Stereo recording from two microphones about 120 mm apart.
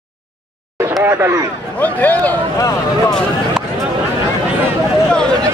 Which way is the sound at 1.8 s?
15° left (ahead or behind).